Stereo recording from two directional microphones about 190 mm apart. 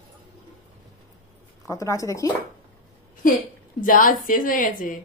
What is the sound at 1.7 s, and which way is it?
Speech, 15° left (ahead or behind).